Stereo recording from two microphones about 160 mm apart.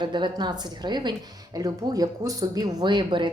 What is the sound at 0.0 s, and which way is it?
A woman's voice, 30° right (ahead or behind).